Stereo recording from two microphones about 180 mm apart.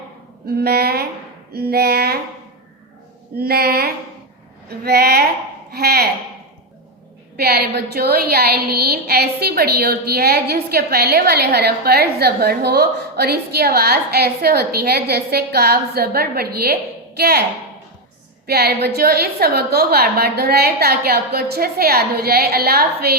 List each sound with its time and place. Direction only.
0.4 s a woman's voice: 60° right (ahead or behind)
3.3 s a woman's voice: 60° right (ahead or behind)
7.3 s a woman's voice: 60° right (ahead or behind)
18.4 s a woman's voice: 60° right (ahead or behind)